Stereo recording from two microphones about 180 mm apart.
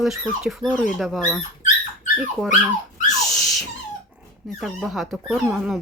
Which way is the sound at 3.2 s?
20° left (ahead or behind).